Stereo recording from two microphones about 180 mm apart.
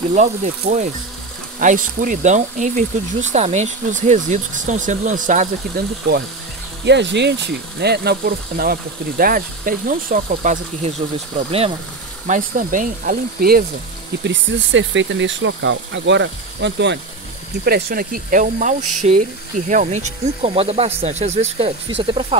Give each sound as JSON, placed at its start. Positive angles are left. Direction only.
{"t": 0.1, "sound": "speech", "side_deg": -40}
{"t": 6.8, "sound": "speech", "side_deg": -75}
{"t": 12.3, "sound": "speech", "side_deg": -45}
{"t": 14.2, "sound": "speech", "side_deg": -90}
{"t": 17.6, "sound": "speech", "side_deg": -60}